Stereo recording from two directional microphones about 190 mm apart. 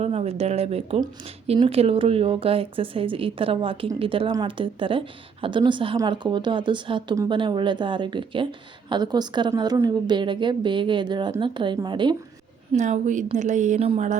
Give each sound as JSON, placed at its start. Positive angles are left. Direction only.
{"t": 0.0, "sound": "speech", "side_deg": -35}
{"t": 12.7, "sound": "speech", "side_deg": -40}